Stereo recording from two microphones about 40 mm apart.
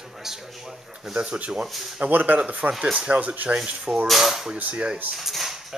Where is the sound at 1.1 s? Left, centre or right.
Right.